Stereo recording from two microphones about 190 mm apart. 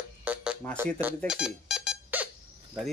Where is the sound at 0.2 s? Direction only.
5° right (ahead or behind).